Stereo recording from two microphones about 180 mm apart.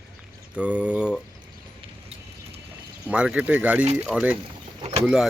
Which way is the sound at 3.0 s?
5° right (ahead or behind).